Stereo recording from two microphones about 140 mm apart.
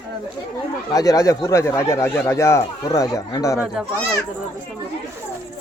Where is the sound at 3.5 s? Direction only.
5° right (ahead or behind).